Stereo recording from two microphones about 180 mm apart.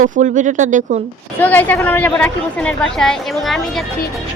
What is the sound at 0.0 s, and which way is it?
Speech, 45° right (ahead or behind).